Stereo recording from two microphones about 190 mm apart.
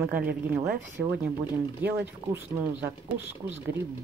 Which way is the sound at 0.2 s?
55° right (ahead or behind).